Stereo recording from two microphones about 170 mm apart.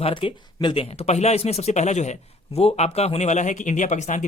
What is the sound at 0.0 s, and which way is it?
A man's voice, 30° left (ahead or behind).